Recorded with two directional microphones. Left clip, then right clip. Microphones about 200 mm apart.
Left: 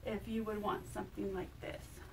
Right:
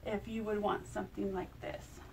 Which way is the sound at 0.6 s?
Centre (ahead or behind).